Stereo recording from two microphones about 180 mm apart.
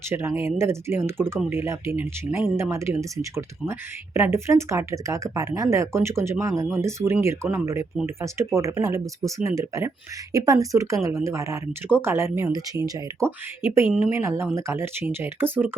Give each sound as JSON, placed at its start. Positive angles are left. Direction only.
{"t": 0.1, "sound": "speech", "side_deg": -15}